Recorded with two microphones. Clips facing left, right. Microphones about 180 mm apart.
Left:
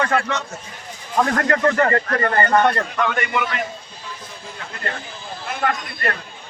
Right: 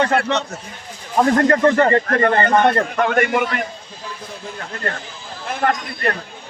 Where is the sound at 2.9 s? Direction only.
50° right (ahead or behind).